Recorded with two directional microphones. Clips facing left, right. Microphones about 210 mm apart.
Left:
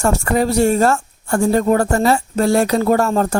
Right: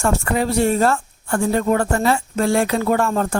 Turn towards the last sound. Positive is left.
turn(degrees=40)  # may be behind; listen again after turning